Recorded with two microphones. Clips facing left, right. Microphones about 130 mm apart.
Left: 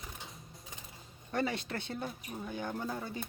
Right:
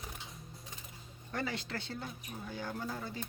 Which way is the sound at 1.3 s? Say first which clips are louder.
Left 4 dB; 25° left (ahead or behind).